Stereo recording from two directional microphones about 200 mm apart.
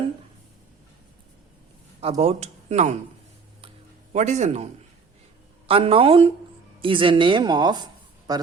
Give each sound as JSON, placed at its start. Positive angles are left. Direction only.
{"t": 2.0, "sound": "speech", "side_deg": -30}
{"t": 4.1, "sound": "a man's voice", "side_deg": -35}